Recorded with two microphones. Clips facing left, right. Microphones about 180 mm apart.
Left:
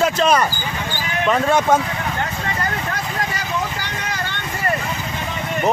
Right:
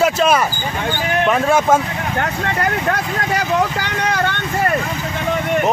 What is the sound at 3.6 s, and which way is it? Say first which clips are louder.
Vehicle: right 7 dB; 65° right (ahead or behind).